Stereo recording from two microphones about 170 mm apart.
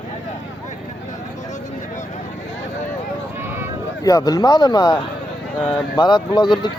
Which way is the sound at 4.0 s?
20° left (ahead or behind).